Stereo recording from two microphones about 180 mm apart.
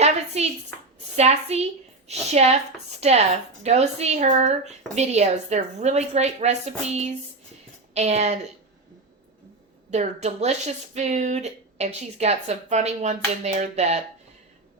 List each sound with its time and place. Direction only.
0.4 s speech: 35° right (ahead or behind)
9.9 s speech: 40° right (ahead or behind)